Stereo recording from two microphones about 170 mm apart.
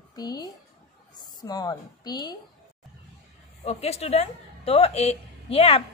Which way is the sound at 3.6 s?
40° left (ahead or behind).